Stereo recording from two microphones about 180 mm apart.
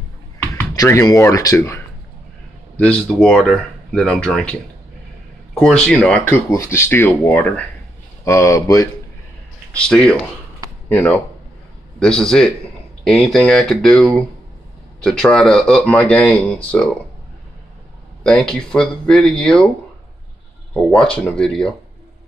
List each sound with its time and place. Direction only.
0.4 s speech: 10° left (ahead or behind)
2.8 s speech: 5° left (ahead or behind)
9.7 s speech: 5° left (ahead or behind)
18.2 s speech: 5° left (ahead or behind)
20.7 s speech: 5° left (ahead or behind)